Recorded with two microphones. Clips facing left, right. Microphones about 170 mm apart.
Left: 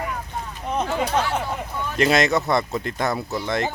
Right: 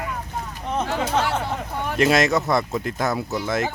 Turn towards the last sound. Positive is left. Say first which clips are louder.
# right 1 dB
turn(degrees=-5)  # may be behind; listen again after turning